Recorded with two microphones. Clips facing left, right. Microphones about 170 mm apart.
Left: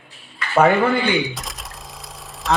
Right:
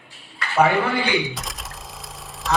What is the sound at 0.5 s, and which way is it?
Speech, 50° left (ahead or behind).